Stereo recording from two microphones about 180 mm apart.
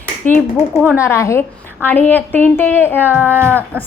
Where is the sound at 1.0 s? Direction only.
15° left (ahead or behind).